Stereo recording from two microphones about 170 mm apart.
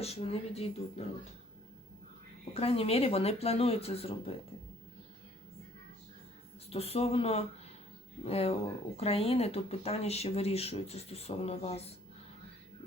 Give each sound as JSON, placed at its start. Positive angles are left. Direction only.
{"t": 0.0, "sound": "speech", "side_deg": 35}
{"t": 2.4, "sound": "speech", "side_deg": 35}
{"t": 6.7, "sound": "speech", "side_deg": 35}